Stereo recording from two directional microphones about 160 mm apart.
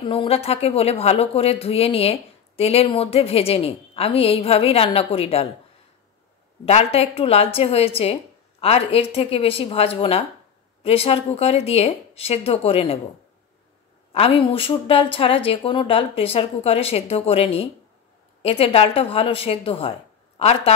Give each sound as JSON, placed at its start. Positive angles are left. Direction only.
{"t": 0.0, "sound": "a woman's voice", "side_deg": 35}
{"t": 6.6, "sound": "a woman's voice", "side_deg": 40}
{"t": 14.1, "sound": "a woman's voice", "side_deg": 35}